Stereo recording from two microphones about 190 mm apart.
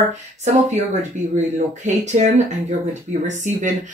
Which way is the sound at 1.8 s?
40° right (ahead or behind).